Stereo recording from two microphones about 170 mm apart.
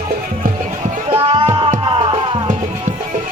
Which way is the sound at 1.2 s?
30° right (ahead or behind).